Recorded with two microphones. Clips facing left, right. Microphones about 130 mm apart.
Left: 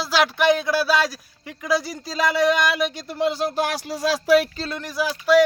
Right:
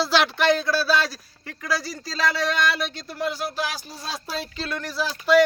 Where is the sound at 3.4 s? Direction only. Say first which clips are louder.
Left 6 dB; 40° left (ahead or behind).